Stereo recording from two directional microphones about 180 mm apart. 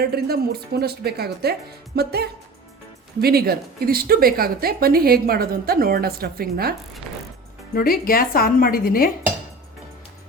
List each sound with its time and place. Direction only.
0.0 s a woman's voice: 60° right (ahead or behind)
7.8 s speech: 55° left (ahead or behind)